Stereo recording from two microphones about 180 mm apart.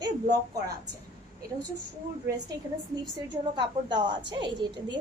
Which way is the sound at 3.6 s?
25° right (ahead or behind).